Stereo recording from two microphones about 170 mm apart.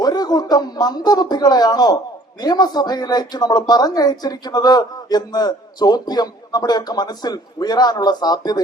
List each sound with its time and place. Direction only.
0.0 s speech: 25° left (ahead or behind)